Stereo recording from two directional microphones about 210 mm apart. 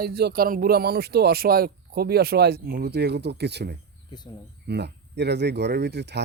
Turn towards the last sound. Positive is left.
turn(degrees=-55)  # may be behind; listen again after turning